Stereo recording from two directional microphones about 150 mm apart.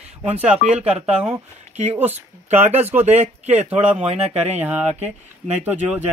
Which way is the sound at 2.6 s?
45° right (ahead or behind).